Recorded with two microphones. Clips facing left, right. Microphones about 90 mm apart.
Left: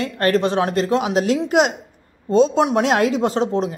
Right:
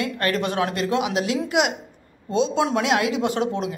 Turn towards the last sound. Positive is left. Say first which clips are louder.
# left 4 dB
turn(degrees=30)  # may be behind; listen again after turning